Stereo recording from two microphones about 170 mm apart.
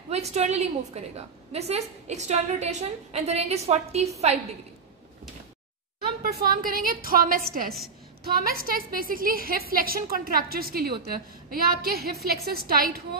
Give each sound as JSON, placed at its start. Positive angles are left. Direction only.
{"t": 0.1, "sound": "a woman's voice", "side_deg": -40}
{"t": 6.2, "sound": "a woman's voice", "side_deg": -60}